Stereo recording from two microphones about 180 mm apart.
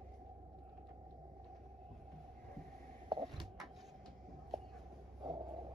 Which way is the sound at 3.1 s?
25° right (ahead or behind).